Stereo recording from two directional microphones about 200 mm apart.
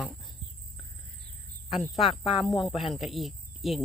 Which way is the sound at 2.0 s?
25° left (ahead or behind).